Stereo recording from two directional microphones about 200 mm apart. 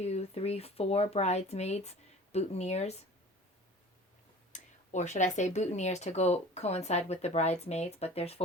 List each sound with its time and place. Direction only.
0.0 s speech: 30° left (ahead or behind)
4.5 s speech: 35° left (ahead or behind)